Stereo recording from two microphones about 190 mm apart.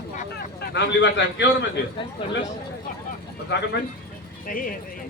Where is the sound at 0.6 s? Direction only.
65° left (ahead or behind).